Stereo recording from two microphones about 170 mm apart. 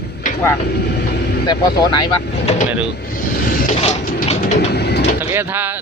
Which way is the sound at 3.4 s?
55° left (ahead or behind).